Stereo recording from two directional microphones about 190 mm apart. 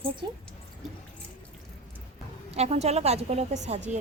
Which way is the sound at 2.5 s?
35° right (ahead or behind).